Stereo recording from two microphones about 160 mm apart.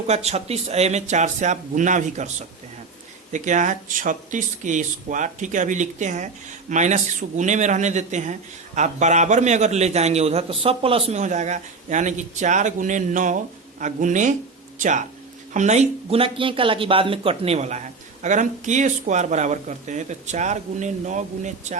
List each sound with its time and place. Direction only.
0.1 s speech: 40° right (ahead or behind)
3.3 s speech: 50° right (ahead or behind)